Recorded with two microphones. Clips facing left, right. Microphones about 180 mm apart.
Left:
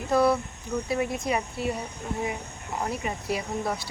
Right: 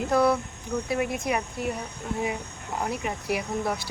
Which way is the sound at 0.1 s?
Centre (ahead or behind).